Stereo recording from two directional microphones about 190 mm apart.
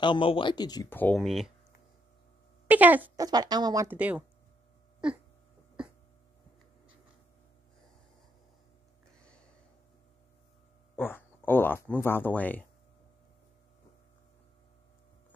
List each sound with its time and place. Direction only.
0.0 s speech: 25° left (ahead or behind)
0.9 s speech: 5° left (ahead or behind)
2.7 s speech: 10° right (ahead or behind)
3.3 s speech: 20° right (ahead or behind); by 5.2 s 5° right (ahead or behind)
11.0 s speech: 10° left (ahead or behind)